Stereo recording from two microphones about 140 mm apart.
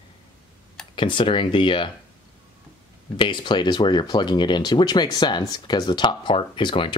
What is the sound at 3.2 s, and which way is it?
Speech, 35° left (ahead or behind).